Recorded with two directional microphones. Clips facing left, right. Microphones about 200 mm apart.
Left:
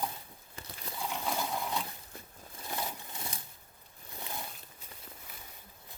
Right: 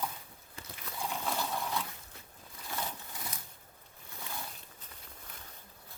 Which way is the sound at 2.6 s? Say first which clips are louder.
Left 1 dB; 20° left (ahead or behind).